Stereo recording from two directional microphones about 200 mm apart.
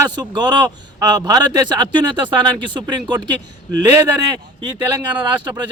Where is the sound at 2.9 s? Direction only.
20° right (ahead or behind).